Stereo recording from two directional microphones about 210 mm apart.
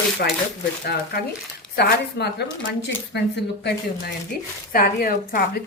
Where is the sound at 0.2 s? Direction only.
50° left (ahead or behind).